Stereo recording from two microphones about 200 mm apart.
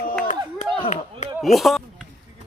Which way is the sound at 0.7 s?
30° left (ahead or behind).